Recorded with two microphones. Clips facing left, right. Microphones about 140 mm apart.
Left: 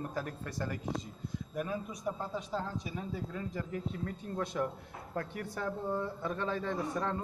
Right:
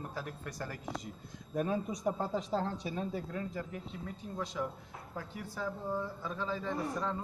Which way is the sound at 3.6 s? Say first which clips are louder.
Left 4 dB; 20° right (ahead or behind).